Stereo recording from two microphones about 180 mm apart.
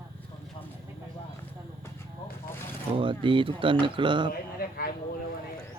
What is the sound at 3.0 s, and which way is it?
Speech, 30° right (ahead or behind).